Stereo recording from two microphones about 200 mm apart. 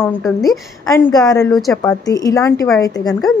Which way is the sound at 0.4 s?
15° left (ahead or behind).